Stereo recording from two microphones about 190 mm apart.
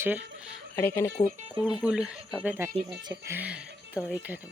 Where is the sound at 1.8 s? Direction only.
5° right (ahead or behind).